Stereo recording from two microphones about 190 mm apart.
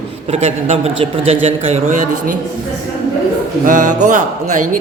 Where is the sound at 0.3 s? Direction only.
35° right (ahead or behind).